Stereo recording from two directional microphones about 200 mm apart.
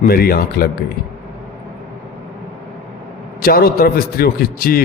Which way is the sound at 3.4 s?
50° left (ahead or behind).